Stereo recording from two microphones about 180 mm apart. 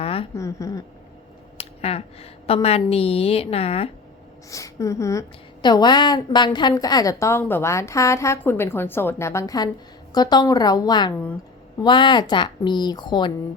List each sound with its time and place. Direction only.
0.0 s a sound: 30° left (ahead or behind)
0.3 s a woman's voice: 15° left (ahead or behind)
1.5 s a woman's voice: 35° left (ahead or behind)
4.5 s a woman's voice: 15° left (ahead or behind)